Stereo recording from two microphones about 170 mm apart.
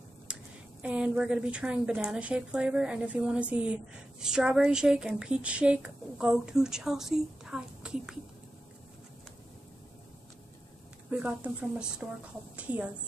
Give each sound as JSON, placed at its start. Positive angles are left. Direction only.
{"t": 0.3, "sound": "a sound", "side_deg": -5}
{"t": 0.8, "sound": "a woman's voice", "side_deg": -5}
{"t": 11.1, "sound": "speech", "side_deg": -10}